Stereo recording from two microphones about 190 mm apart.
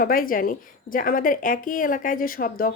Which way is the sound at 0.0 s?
50° left (ahead or behind).